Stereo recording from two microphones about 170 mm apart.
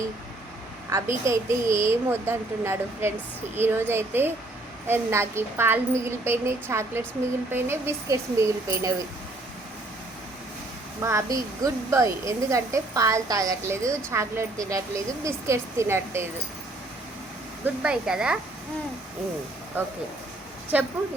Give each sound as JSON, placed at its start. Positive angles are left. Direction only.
{"t": 0.9, "sound": "a woman's voice", "side_deg": -20}
{"t": 11.0, "sound": "a woman's voice", "side_deg": -20}
{"t": 17.8, "sound": "speech", "side_deg": -5}
{"t": 19.8, "sound": "a woman's voice", "side_deg": -10}